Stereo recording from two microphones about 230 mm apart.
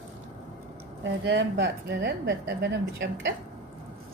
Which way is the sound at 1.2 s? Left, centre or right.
Right.